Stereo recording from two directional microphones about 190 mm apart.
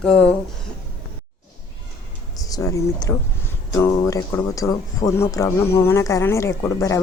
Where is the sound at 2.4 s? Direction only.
20° left (ahead or behind).